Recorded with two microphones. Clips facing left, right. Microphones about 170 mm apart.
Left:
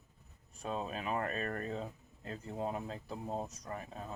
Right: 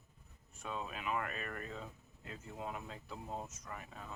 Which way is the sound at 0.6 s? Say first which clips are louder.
Left 4 dB; 35° left (ahead or behind).